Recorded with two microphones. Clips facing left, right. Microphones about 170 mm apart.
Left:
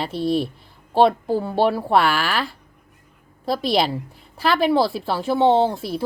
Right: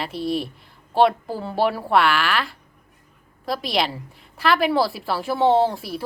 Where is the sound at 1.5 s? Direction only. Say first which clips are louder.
Left 1 dB; 25° left (ahead or behind).